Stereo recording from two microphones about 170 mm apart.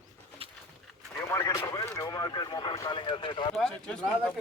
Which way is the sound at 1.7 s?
20° left (ahead or behind).